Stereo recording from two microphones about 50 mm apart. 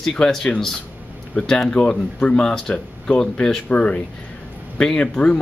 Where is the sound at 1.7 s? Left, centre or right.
Left.